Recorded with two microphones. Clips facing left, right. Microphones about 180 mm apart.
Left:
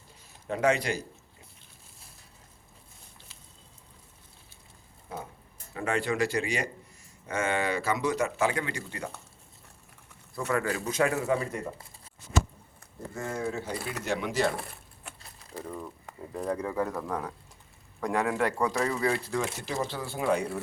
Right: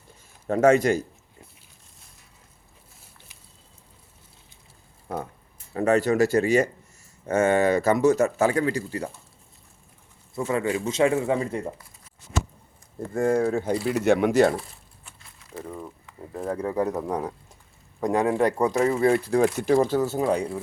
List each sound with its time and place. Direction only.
0.4 s speech: 50° right (ahead or behind)
5.7 s speech: 40° right (ahead or behind)
10.4 s speech: 25° right (ahead or behind)
13.1 s speech: 50° right (ahead or behind)
14.5 s a sound: 60° left (ahead or behind)
16.3 s speech: 5° right (ahead or behind)
16.7 s speech: 20° right (ahead or behind)
18.8 s speech: 35° right (ahead or behind)
19.5 s speech: 50° right (ahead or behind)